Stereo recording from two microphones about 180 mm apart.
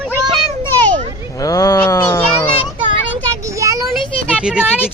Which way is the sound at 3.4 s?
15° right (ahead or behind).